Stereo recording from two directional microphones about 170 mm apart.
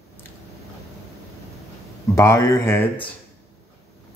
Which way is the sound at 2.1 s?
15° left (ahead or behind).